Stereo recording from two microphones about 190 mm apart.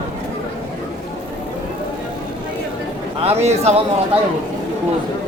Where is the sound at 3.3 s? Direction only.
35° right (ahead or behind).